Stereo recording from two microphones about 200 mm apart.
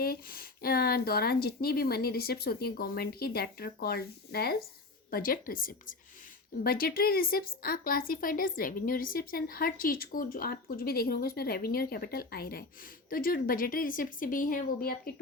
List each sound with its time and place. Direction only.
0.0 s speech: 50° left (ahead or behind)